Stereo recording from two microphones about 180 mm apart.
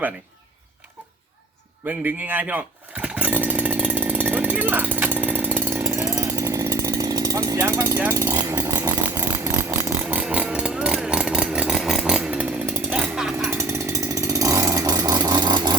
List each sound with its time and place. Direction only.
1.9 s chainsaw: 10° right (ahead or behind)